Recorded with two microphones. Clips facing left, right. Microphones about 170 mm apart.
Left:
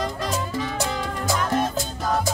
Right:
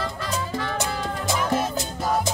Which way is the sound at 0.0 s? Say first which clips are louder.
Left 2 dB; 20° left (ahead or behind).